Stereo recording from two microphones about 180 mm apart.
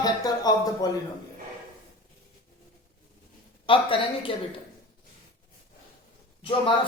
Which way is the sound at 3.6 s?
30° left (ahead or behind).